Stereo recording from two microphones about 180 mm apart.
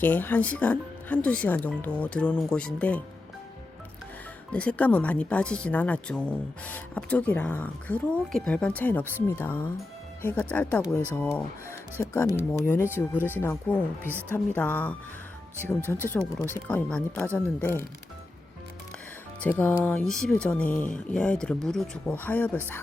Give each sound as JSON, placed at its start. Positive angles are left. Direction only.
{"t": 0.0, "sound": "speech", "side_deg": 10}
{"t": 4.5, "sound": "speech", "side_deg": 5}
{"t": 16.0, "sound": "speech", "side_deg": 10}
{"t": 19.4, "sound": "speech", "side_deg": 10}